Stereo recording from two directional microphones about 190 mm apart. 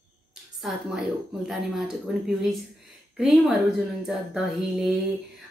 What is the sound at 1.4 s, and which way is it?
Speech, centre (ahead or behind).